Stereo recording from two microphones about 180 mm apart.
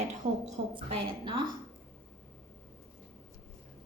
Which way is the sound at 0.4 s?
25° right (ahead or behind).